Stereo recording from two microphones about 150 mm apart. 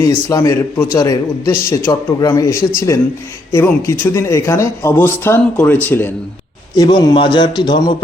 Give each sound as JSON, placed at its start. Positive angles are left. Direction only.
{"t": 0.0, "sound": "a man's voice", "side_deg": 25}
{"t": 6.7, "sound": "a man's voice", "side_deg": 30}